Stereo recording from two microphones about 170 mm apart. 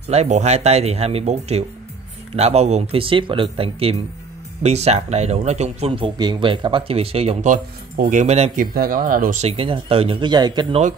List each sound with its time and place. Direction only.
0.1 s speech: 40° right (ahead or behind)
8.7 s speech: 55° right (ahead or behind)
9.4 s speech: 35° right (ahead or behind)